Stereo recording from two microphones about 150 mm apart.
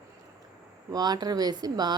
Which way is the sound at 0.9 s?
25° right (ahead or behind).